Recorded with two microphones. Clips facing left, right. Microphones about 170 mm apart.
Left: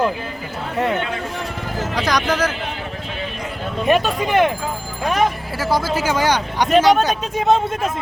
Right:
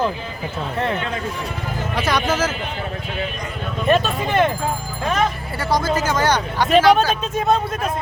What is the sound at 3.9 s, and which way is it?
Speech, 15° left (ahead or behind).